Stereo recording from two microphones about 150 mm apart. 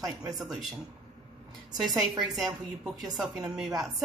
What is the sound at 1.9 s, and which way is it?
Speech, 25° right (ahead or behind).